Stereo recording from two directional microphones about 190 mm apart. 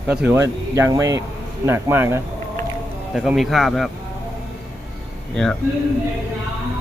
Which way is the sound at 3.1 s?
Centre (ahead or behind).